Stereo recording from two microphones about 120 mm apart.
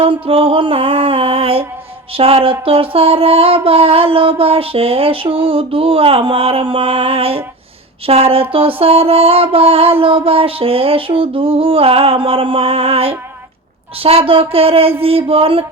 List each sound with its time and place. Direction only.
0.0 s child singing: 50° right (ahead or behind)